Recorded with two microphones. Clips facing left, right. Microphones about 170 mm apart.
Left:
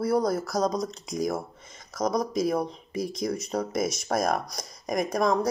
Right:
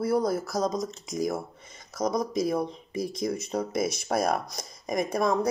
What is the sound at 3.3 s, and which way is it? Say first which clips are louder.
Speech: even; 25° right (ahead or behind).